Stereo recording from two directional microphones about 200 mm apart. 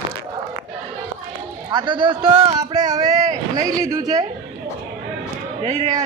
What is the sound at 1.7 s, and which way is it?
A man's voice, 25° right (ahead or behind).